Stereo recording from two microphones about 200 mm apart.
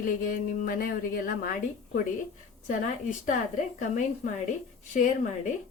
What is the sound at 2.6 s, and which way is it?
Speech, 40° left (ahead or behind).